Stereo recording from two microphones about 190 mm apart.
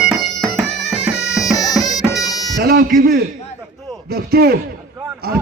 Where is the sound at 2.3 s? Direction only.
20° left (ahead or behind).